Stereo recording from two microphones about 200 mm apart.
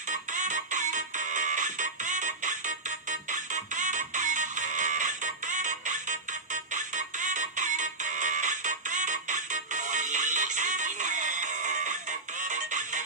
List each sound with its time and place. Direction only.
0.1 s music: 40° right (ahead or behind)